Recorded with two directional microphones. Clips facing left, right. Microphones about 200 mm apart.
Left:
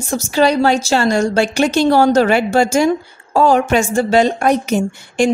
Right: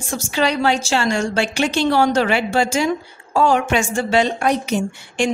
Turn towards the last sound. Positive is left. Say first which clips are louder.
# left 5 dB
turn(degrees=45)  # may be behind; listen again after turning